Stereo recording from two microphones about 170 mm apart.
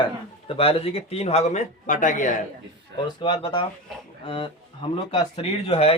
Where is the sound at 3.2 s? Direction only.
30° left (ahead or behind).